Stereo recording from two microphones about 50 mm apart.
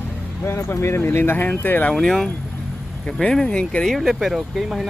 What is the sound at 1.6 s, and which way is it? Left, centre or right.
Speech, left.